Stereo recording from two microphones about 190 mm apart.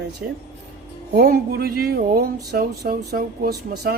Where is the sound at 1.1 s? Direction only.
55° right (ahead or behind).